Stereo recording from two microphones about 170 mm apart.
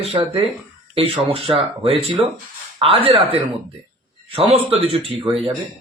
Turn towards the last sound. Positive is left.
turn(degrees=-35)  # may be behind; listen again after turning